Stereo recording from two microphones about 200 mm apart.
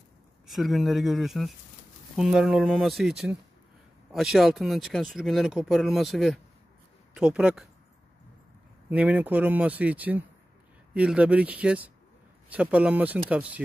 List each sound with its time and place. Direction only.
0.5 s speech: centre (ahead or behind)
8.9 s speech: 5° right (ahead or behind)